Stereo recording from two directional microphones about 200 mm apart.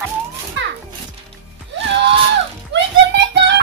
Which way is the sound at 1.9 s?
60° right (ahead or behind).